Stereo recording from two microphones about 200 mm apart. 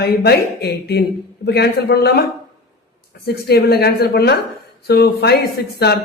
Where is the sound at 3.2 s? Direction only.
55° left (ahead or behind).